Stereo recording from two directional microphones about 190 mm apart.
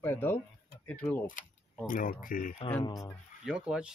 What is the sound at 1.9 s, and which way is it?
Speech, 45° left (ahead or behind).